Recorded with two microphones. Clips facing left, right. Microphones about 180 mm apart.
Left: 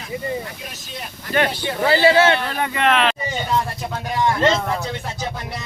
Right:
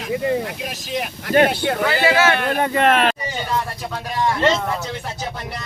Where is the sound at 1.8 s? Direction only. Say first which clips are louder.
Left 4 dB; 30° left (ahead or behind).